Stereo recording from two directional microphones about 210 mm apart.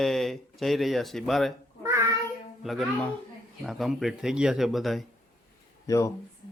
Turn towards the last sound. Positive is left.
turn(degrees=15)  # may be behind; listen again after turning